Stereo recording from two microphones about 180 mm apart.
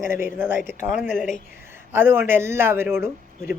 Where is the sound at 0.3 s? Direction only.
10° right (ahead or behind).